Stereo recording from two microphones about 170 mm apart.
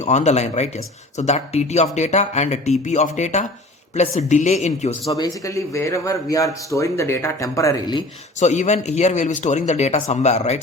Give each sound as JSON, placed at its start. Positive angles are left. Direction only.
{"t": 0.0, "sound": "speech", "side_deg": 40}
{"t": 5.1, "sound": "speech", "side_deg": 20}
{"t": 8.4, "sound": "speech", "side_deg": 45}